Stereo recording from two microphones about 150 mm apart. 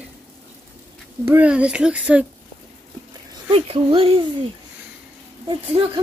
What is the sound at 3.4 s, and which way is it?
Speech, 40° right (ahead or behind).